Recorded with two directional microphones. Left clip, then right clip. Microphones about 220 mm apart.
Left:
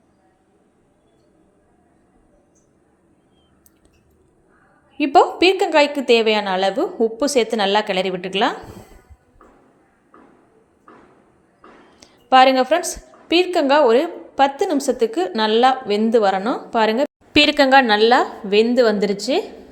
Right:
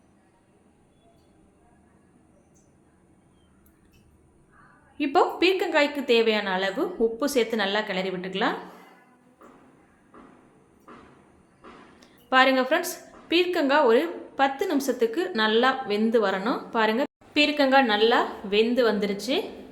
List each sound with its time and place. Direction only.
4.9 s a woman's voice: 25° left (ahead or behind)
11.9 s a woman's voice: 25° left (ahead or behind)
17.3 s a woman's voice: 35° left (ahead or behind)